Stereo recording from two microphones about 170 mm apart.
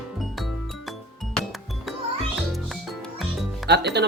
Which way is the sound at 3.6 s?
80° right.